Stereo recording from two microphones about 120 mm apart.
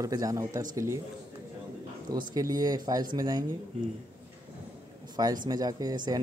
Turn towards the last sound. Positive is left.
turn(degrees=-35)  # may be behind; listen again after turning